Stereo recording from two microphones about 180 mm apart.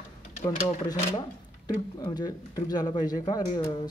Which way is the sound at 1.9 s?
20° left (ahead or behind).